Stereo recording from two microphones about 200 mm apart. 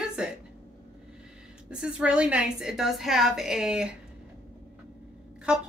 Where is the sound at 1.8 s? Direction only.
5° right (ahead or behind).